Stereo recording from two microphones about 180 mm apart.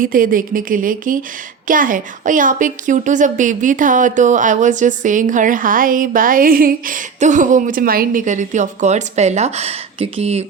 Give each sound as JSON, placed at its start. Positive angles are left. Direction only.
{"t": 0.0, "sound": "speech", "side_deg": -50}